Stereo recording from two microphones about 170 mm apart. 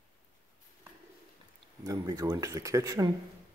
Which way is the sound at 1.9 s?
20° right (ahead or behind).